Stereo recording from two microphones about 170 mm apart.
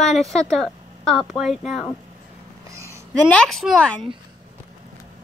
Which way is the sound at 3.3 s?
5° left (ahead or behind).